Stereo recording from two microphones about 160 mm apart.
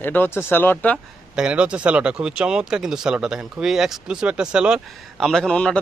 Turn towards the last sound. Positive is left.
turn(degrees=5)  # may be behind; listen again after turning